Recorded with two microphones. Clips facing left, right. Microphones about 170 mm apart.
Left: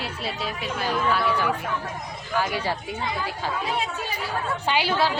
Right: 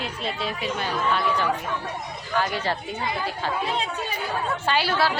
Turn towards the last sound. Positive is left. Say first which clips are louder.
# even
turn(degrees=15)  # may be behind; listen again after turning